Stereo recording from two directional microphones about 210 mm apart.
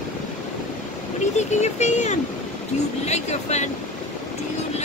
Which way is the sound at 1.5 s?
35° left (ahead or behind).